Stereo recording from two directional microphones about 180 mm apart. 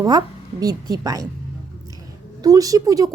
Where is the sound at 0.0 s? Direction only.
20° right (ahead or behind).